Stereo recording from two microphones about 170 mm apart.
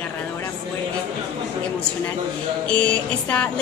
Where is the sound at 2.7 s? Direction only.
5° left (ahead or behind).